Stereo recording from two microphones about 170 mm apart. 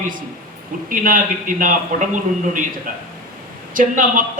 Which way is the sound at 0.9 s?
50° right (ahead or behind).